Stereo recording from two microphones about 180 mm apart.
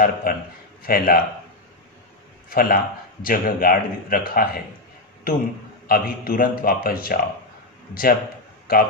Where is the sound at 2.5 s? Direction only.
55° left (ahead or behind).